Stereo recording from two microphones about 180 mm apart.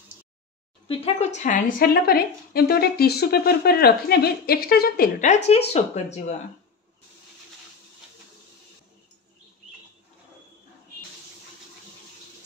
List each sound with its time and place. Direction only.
0.8 s speech: 35° left (ahead or behind); by 5.3 s 55° left (ahead or behind)
5.7 s speech: 40° left (ahead or behind)